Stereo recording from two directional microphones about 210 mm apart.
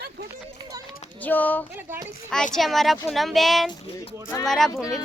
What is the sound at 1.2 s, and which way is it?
Speech, 10° left (ahead or behind).